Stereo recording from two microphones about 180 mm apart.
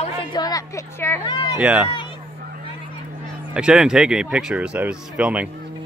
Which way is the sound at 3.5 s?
5° right (ahead or behind).